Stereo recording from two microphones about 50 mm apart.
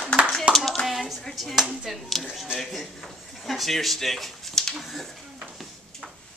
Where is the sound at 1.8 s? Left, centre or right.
Centre.